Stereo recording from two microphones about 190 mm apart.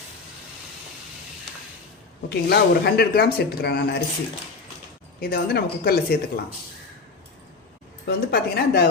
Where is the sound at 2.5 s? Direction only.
55° left (ahead or behind).